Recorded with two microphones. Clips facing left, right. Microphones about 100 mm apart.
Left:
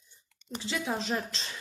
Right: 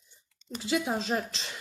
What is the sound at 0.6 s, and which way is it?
Speech, 10° right (ahead or behind).